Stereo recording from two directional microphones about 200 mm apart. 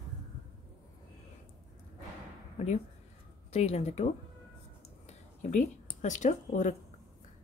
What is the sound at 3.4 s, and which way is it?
Speech, 30° left (ahead or behind).